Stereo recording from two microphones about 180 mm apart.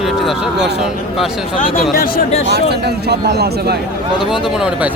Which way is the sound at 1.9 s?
55° left (ahead or behind).